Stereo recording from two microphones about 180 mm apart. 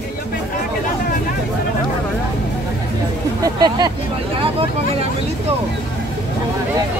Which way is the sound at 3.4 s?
20° right (ahead or behind).